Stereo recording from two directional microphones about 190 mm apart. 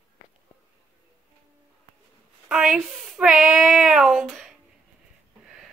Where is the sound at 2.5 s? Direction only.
Centre (ahead or behind).